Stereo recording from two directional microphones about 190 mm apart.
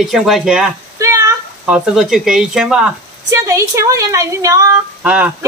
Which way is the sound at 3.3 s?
15° right (ahead or behind).